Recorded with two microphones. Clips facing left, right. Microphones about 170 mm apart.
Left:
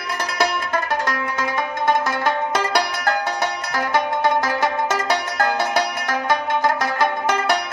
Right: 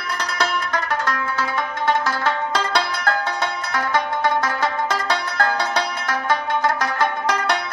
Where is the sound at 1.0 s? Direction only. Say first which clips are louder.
Even; 20° left (ahead or behind).